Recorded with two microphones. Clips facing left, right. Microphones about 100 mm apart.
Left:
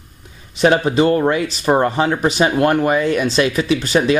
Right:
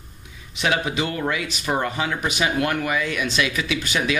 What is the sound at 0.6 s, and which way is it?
Speech, 40° left (ahead or behind).